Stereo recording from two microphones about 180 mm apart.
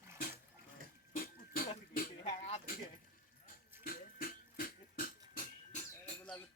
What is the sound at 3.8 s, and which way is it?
Beatboxing, 55° left (ahead or behind).